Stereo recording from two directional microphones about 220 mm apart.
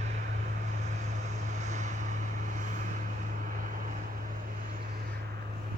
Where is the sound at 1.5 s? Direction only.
30° right (ahead or behind).